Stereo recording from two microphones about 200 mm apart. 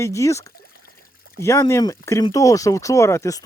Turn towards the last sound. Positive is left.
turn(degrees=15)  # may be behind; listen again after turning